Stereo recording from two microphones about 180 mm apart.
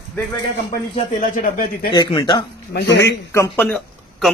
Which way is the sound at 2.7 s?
65° left (ahead or behind).